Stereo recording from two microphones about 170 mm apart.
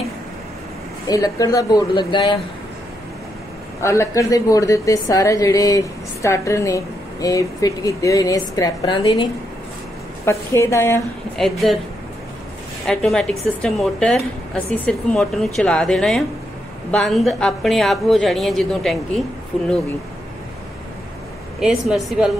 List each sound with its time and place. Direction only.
1.0 s a woman's voice: 20° left (ahead or behind)
3.8 s a woman's voice: 15° left (ahead or behind)
10.2 s a woman's voice: 15° left (ahead or behind)
11.3 s speech: centre (ahead or behind)
12.8 s speech: centre (ahead or behind)
21.5 s speech: centre (ahead or behind)